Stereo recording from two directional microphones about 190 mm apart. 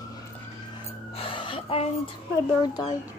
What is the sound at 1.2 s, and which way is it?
Music, 30° left (ahead or behind).